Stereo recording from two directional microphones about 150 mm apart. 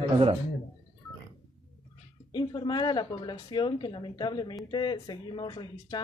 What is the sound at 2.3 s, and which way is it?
A woman's voice, 30° left (ahead or behind).